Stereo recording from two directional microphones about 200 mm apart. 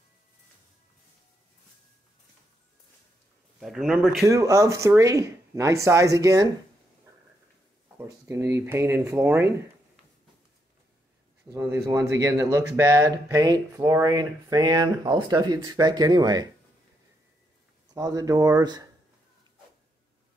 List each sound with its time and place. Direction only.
3.5 s a man's voice: centre (ahead or behind)
4.3 s speech: 15° right (ahead or behind)
8.3 s speech: 15° right (ahead or behind)
11.5 s speech: 15° right (ahead or behind)
17.9 s speech: 15° right (ahead or behind)